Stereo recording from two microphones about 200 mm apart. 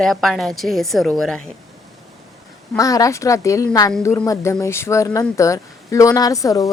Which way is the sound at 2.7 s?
15° left (ahead or behind).